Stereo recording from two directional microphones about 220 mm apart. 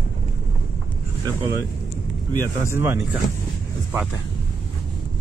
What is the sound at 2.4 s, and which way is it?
Speech, 10° right (ahead or behind).